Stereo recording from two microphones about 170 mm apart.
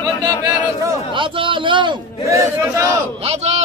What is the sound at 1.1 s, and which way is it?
Speech, 30° right (ahead or behind).